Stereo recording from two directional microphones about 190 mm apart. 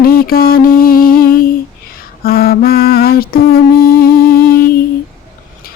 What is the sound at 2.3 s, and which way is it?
Lullaby, 55° left (ahead or behind).